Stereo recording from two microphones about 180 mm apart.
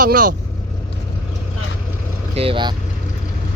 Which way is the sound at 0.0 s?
50° right (ahead or behind).